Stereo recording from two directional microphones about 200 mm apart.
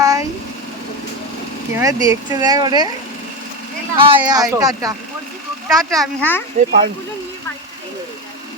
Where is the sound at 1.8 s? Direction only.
15° right (ahead or behind).